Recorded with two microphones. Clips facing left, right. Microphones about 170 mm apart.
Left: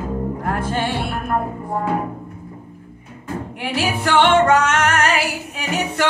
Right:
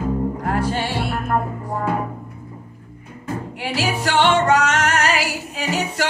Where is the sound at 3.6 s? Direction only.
55° left (ahead or behind).